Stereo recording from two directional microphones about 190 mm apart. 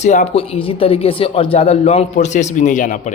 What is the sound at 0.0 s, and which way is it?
Speech, 35° left (ahead or behind).